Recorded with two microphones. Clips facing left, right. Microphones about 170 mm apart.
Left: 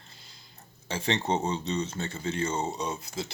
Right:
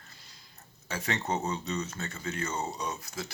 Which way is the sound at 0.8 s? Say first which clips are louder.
Left 4 dB; 30° left (ahead or behind).